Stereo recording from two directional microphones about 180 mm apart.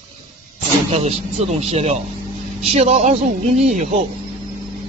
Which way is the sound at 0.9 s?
35° right (ahead or behind).